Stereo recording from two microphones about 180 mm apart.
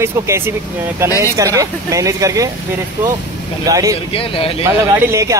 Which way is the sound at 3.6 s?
20° right (ahead or behind).